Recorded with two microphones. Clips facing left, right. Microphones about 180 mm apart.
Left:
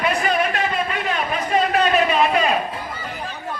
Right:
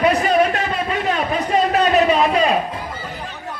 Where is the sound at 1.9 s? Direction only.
30° right (ahead or behind).